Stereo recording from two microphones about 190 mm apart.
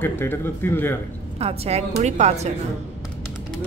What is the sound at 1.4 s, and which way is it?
A woman's voice, 30° right (ahead or behind).